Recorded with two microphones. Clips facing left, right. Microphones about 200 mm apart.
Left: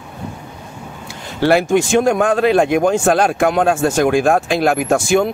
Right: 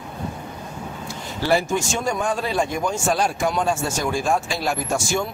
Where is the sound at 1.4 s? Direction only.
70° left (ahead or behind).